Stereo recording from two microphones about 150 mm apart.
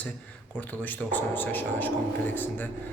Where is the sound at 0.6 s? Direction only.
10° left (ahead or behind).